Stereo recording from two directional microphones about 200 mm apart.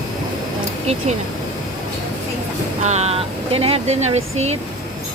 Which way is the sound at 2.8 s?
35° right (ahead or behind).